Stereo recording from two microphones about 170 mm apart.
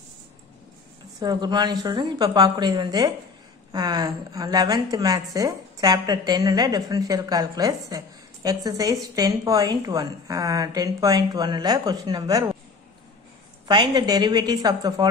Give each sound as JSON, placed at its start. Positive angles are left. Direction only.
{"t": 1.2, "sound": "a woman's voice", "side_deg": -25}
{"t": 13.7, "sound": "a woman's voice", "side_deg": -25}